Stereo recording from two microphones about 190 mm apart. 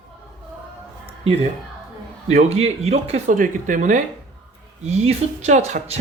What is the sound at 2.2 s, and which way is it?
Speech, 35° right (ahead or behind).